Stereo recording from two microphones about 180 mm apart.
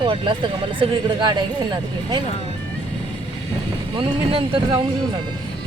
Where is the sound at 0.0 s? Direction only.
25° right (ahead or behind).